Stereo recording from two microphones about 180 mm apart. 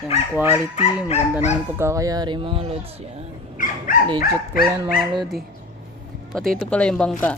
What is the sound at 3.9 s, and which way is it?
Dog, 50° left (ahead or behind).